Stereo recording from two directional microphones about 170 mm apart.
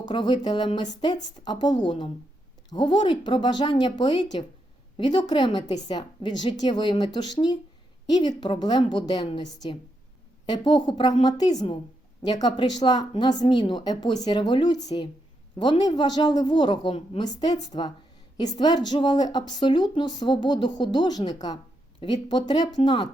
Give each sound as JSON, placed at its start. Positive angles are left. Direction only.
{"t": 0.0, "sound": "speech", "side_deg": 25}